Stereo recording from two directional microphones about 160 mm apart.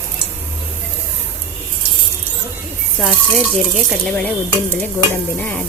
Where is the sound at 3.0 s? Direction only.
Centre (ahead or behind).